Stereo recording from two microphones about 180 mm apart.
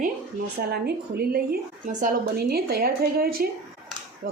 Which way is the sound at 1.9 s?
45° right (ahead or behind).